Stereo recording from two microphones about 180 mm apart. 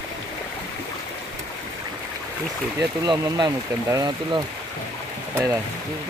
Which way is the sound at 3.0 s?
25° right (ahead or behind).